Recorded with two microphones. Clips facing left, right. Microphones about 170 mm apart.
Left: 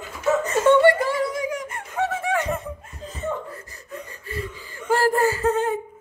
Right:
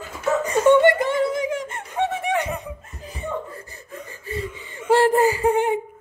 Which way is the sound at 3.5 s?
30° right (ahead or behind).